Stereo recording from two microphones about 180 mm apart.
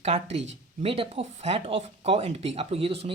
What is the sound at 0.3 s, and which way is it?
Speech, 90° right.